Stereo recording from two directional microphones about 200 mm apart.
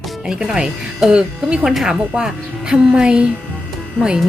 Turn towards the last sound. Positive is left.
turn(degrees=-5)  # may be behind; listen again after turning